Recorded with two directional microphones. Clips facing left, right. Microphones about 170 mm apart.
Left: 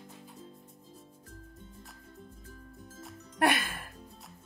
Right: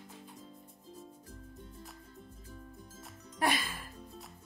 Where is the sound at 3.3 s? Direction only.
65° left (ahead or behind).